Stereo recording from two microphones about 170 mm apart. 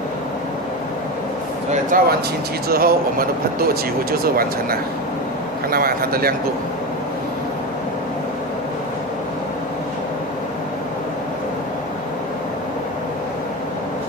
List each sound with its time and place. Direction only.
1.9 s speech: 55° right (ahead or behind)